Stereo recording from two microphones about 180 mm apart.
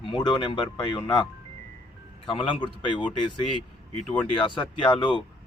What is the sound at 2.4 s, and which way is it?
Speech, 25° left (ahead or behind).